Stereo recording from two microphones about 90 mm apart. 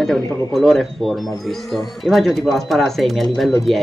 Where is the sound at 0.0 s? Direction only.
Centre (ahead or behind).